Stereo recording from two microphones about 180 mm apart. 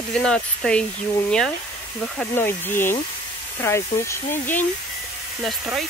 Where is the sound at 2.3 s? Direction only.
10° left (ahead or behind).